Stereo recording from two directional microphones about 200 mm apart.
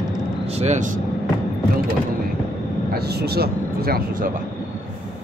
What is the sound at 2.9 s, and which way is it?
Speech, 55° right (ahead or behind).